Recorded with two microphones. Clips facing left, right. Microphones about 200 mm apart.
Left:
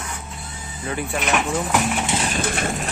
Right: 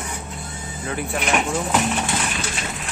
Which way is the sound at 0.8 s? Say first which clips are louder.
Even; centre (ahead or behind).